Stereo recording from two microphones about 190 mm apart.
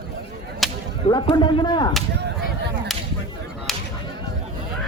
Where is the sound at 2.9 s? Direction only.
Centre (ahead or behind).